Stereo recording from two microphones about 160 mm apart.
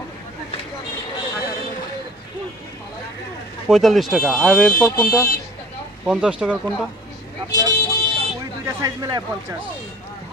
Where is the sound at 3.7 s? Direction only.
Centre (ahead or behind).